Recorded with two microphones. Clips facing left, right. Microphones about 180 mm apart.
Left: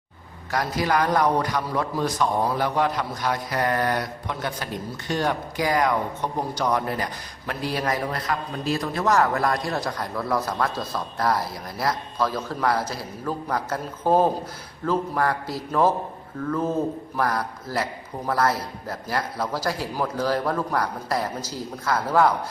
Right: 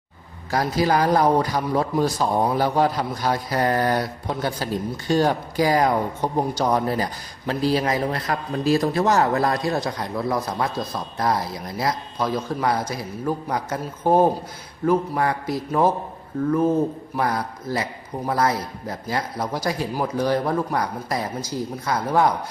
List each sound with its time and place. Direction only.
0.5 s a man's voice: 30° right (ahead or behind)
8.3 s a man's voice: 40° right (ahead or behind); by 15.9 s 20° right (ahead or behind)
17.2 s speech: 20° right (ahead or behind)